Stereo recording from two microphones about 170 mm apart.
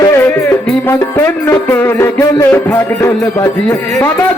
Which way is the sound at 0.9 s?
15° left (ahead or behind).